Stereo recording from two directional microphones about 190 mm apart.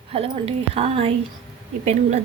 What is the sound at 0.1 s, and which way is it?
A woman's voice, 30° right (ahead or behind).